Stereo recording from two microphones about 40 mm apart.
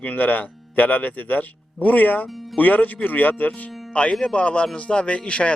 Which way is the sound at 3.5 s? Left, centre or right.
Left.